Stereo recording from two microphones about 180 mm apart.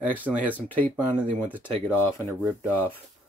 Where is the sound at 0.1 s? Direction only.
10° right (ahead or behind).